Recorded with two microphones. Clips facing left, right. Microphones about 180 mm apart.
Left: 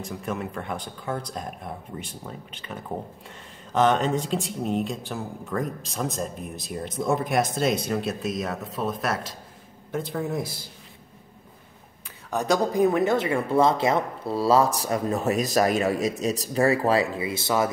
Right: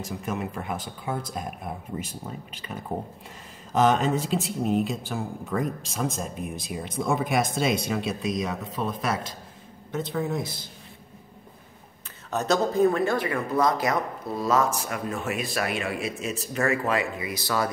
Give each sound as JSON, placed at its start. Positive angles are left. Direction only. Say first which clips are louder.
{"t": 0.3, "sound": "speech", "louder": "even", "side_deg": -5}
{"t": 3.7, "sound": "speech", "louder": "even", "side_deg": -10}
{"t": 12.3, "sound": "speech", "louder": "left 1 dB", "side_deg": 10}